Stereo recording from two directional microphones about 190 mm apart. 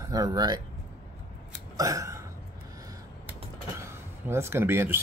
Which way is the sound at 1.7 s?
15° right (ahead or behind).